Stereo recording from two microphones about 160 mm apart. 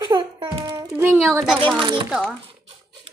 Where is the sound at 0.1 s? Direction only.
30° right (ahead or behind).